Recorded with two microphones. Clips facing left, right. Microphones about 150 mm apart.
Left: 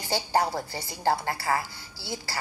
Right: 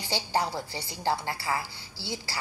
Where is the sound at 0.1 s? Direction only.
45° left (ahead or behind).